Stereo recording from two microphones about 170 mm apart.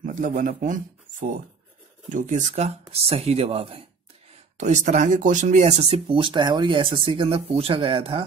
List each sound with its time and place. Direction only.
0.0 s speech: 50° right (ahead or behind)
2.0 s speech: 50° right (ahead or behind)
4.6 s speech: 45° right (ahead or behind)